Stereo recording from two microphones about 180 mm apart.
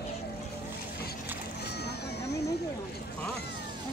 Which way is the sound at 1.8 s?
65° left (ahead or behind).